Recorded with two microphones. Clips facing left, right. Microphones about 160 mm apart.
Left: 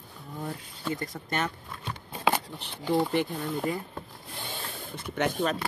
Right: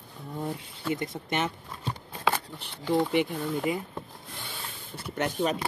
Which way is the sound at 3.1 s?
10° right (ahead or behind).